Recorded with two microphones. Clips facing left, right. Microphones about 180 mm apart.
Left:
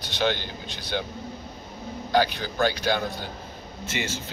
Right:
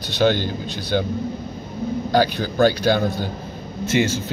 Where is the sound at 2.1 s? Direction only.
40° right (ahead or behind).